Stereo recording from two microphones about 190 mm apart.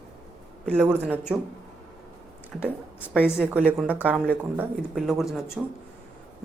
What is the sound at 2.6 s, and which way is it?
A woman's voice, 5° right (ahead or behind).